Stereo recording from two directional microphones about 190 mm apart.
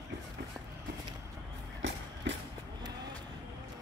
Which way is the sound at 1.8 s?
80° right.